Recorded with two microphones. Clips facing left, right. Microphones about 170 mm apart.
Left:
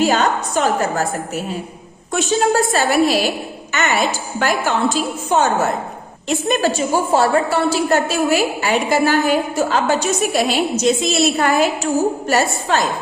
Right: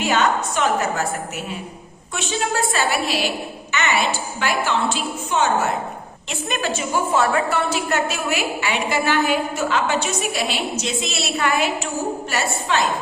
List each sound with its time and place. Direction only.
0.0 s a woman's voice: 35° left (ahead or behind)
2.1 s a woman's voice: 40° left (ahead or behind)